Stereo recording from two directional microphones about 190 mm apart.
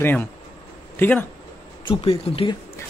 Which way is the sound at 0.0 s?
10° left (ahead or behind).